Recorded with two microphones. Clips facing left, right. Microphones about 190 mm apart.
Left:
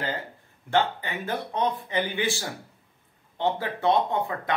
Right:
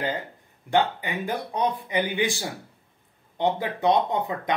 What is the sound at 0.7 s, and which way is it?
Speech, 15° right (ahead or behind).